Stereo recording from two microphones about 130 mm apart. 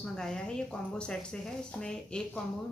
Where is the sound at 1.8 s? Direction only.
5° left (ahead or behind).